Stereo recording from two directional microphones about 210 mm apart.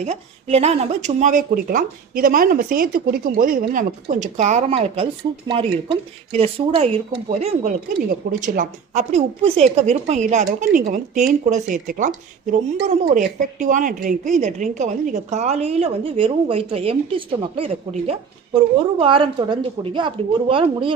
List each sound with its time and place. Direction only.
0.0 s a woman's voice: 30° right (ahead or behind)